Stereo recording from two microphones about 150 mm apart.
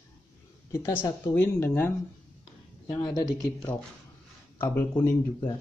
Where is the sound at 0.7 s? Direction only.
15° left (ahead or behind).